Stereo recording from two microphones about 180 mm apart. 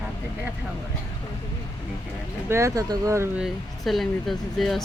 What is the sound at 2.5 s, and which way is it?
Speech, 15° right (ahead or behind).